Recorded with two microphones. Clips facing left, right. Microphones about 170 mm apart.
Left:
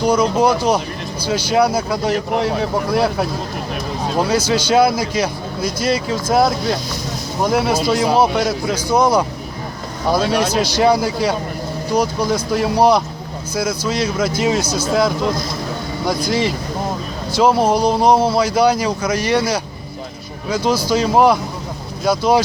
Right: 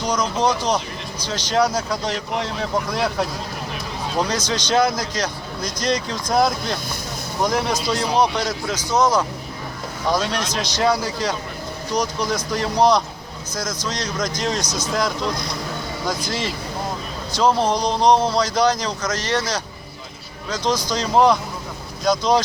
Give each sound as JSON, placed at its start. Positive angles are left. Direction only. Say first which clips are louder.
{"t": 0.0, "sound": "speech", "louder": "left 6 dB", "side_deg": 10}
{"t": 2.1, "sound": "speech", "louder": "left 7 dB", "side_deg": 50}
{"t": 4.2, "sound": "speech", "louder": "left 6 dB", "side_deg": 10}